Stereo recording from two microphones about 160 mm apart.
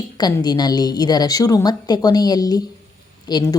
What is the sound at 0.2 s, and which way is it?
Speech, 25° left (ahead or behind).